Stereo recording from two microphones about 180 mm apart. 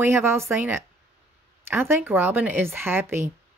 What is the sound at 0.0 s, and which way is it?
Speech, 15° right (ahead or behind).